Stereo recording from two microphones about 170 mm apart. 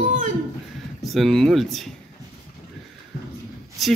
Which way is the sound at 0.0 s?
50° right (ahead or behind).